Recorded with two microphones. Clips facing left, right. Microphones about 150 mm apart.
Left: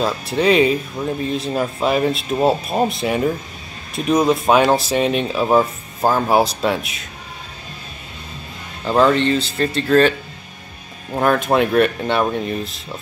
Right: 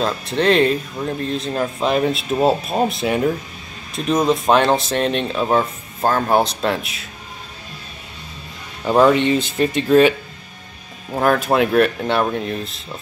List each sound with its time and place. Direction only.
0.0 s speech: 5° left (ahead or behind)
8.8 s speech: 10° right (ahead or behind)
11.1 s speech: centre (ahead or behind)